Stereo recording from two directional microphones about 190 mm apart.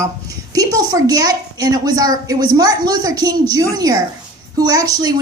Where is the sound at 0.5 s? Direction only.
20° right (ahead or behind).